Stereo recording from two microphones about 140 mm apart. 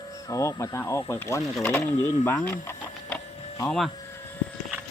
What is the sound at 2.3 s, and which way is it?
Printer, 15° left (ahead or behind).